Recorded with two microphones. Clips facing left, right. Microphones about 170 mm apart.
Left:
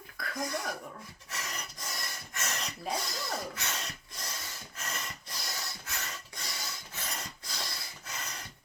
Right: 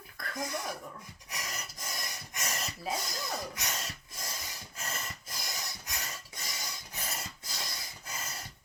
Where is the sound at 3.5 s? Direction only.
10° right (ahead or behind).